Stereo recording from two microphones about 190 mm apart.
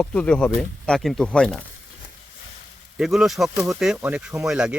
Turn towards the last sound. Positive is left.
turn(degrees=-5)  # may be behind; listen again after turning